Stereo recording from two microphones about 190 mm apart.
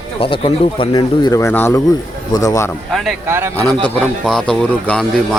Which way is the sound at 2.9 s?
Centre (ahead or behind).